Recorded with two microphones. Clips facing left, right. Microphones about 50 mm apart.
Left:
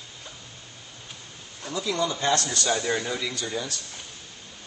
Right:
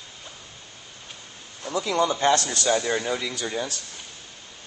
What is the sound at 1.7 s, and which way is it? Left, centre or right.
Speech, right.